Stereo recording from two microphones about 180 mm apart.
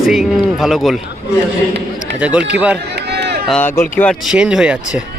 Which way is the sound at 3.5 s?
10° left (ahead or behind).